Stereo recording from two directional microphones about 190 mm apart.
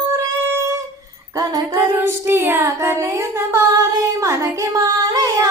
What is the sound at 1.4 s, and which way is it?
Female singing, 20° right (ahead or behind).